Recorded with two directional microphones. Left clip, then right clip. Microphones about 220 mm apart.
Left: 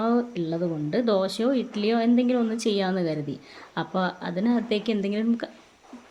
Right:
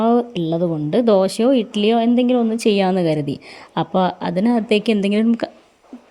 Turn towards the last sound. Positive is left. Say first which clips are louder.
# right 8 dB
turn(degrees=-35)  # may be behind; listen again after turning